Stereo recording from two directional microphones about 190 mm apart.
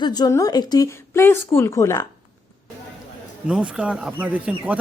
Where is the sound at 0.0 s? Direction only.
20° left (ahead or behind).